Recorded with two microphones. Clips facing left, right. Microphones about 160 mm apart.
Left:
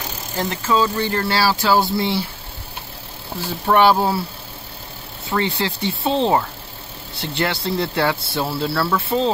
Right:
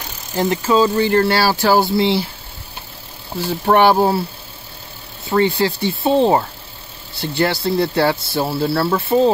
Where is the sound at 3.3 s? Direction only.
10° right (ahead or behind).